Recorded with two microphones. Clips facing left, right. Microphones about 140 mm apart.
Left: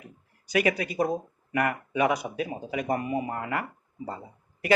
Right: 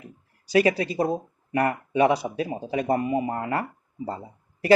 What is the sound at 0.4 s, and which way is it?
Speech, 30° right (ahead or behind).